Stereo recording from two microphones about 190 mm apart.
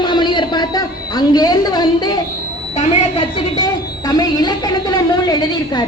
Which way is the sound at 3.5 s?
20° left (ahead or behind).